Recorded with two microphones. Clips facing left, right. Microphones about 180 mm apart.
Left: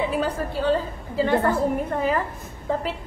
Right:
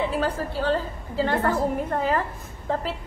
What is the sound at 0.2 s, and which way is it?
A woman's voice, 15° left (ahead or behind).